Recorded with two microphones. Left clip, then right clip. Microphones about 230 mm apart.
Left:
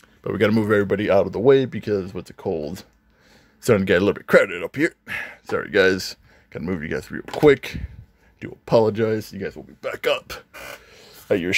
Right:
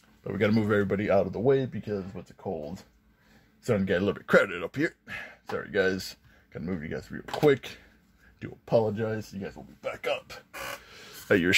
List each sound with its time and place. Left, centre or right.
0.2 s speech: left
0.5 s speech: centre; by 2.8 s left
3.6 s speech: left
8.9 s speech: left
9.8 s speech: left
10.9 s a sound: centre